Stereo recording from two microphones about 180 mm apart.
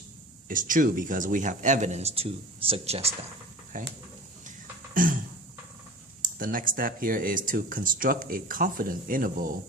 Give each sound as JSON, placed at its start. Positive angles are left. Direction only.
{"t": 0.4, "sound": "speech", "side_deg": -50}
{"t": 3.7, "sound": "speech", "side_deg": -50}
{"t": 5.0, "sound": "speech", "side_deg": -50}
{"t": 6.2, "sound": "speech", "side_deg": -50}